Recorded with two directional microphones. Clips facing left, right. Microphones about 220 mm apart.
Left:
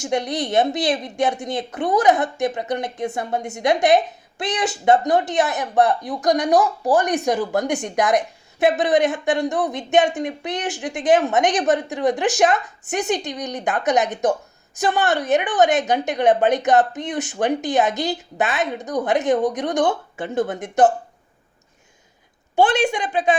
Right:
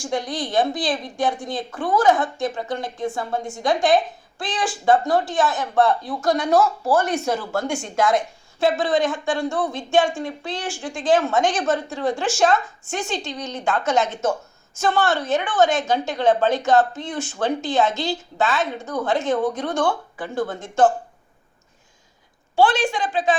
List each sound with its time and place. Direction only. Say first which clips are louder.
0.0 s a woman's voice: left 3 dB; 20° left (ahead or behind)
22.5 s speech: left 1 dB; 20° left (ahead or behind)